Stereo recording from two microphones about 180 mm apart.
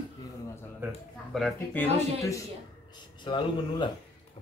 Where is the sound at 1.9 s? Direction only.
15° left (ahead or behind).